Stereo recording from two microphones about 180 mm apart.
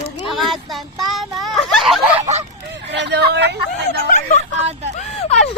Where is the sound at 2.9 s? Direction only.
70° right (ahead or behind).